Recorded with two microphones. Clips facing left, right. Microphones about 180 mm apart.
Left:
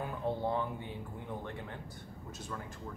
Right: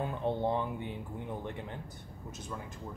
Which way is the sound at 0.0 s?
25° right (ahead or behind).